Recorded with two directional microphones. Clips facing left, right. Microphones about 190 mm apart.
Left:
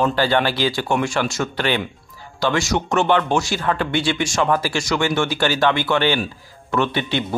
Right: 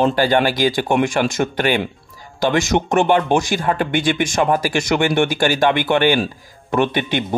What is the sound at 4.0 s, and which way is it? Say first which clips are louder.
Speech: right 2 dB; 50° right (ahead or behind).